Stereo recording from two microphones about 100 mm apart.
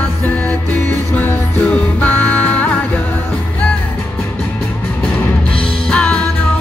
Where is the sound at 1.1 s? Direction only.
15° left (ahead or behind).